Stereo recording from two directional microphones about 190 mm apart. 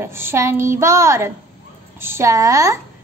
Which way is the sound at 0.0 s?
15° right (ahead or behind).